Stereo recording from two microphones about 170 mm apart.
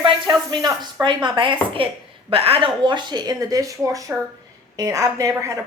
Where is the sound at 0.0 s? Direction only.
25° right (ahead or behind).